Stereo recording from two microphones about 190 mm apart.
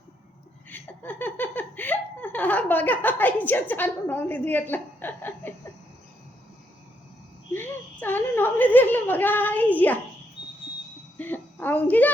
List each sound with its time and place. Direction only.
0.7 s speech: 10° left (ahead or behind)
7.5 s speech: 10° left (ahead or behind)
11.2 s a woman's voice: 10° left (ahead or behind)